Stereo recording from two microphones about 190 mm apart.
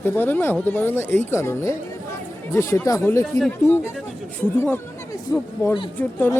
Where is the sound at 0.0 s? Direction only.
10° left (ahead or behind).